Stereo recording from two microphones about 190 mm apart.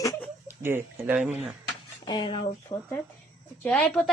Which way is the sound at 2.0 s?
20° left (ahead or behind).